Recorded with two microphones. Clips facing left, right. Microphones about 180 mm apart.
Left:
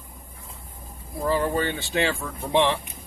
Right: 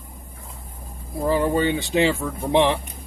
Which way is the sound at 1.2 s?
15° right (ahead or behind).